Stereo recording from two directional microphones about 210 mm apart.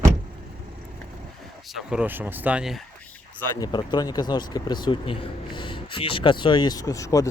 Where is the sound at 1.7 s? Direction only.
5° right (ahead or behind).